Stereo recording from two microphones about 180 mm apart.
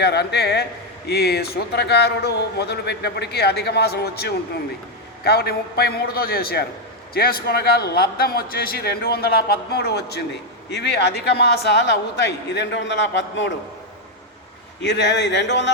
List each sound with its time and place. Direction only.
0.0 s a man's voice: 70° left (ahead or behind); by 13.5 s 90° left
14.8 s a man's voice: 75° left (ahead or behind)